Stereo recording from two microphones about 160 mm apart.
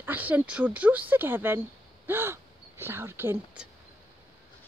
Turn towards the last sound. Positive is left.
turn(degrees=-15)  # may be behind; listen again after turning